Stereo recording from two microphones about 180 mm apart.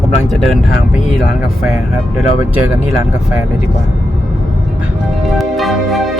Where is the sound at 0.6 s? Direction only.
45° left (ahead or behind).